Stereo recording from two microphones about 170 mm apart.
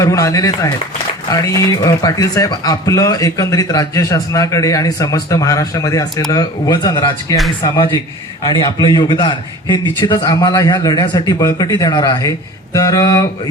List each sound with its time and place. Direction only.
0.0 s speech: 20° left (ahead or behind)